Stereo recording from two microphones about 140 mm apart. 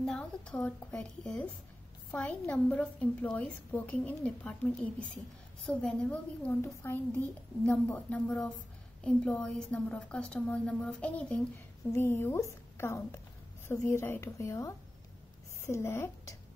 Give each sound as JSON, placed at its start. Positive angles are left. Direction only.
{"t": 0.0, "sound": "a woman's voice", "side_deg": 5}